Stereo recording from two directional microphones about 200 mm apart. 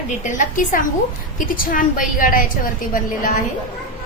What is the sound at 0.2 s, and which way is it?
A woman's voice, 40° left (ahead or behind).